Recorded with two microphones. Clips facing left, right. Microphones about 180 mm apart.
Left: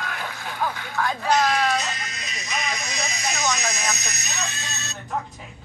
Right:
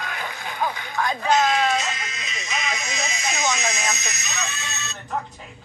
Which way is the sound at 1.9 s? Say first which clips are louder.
Right 1 dB; 35° left (ahead or behind).